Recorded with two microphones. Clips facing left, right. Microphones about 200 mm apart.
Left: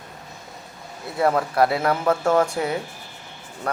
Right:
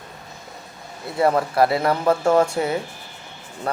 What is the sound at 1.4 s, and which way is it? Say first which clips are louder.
A man's voice: right 1 dB; centre (ahead or behind).